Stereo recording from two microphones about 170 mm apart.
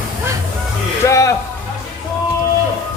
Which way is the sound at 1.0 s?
20° left (ahead or behind).